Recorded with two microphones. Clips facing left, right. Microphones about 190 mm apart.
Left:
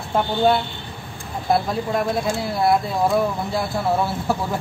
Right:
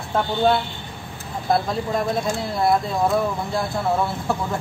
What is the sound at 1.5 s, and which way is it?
Speech, centre (ahead or behind).